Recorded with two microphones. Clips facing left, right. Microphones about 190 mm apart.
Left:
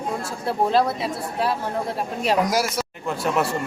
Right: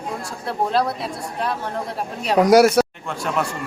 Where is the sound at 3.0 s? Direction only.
5° left (ahead or behind).